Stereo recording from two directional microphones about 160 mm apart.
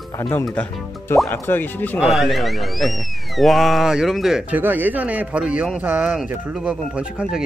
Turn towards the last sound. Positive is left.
turn(degrees=-5)  # may be behind; listen again after turning